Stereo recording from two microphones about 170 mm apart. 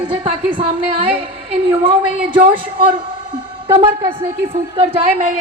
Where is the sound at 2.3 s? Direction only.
50° right (ahead or behind).